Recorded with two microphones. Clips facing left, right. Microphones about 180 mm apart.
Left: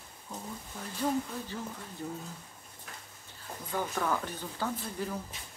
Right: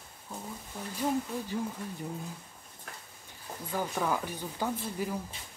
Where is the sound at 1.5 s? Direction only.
15° right (ahead or behind).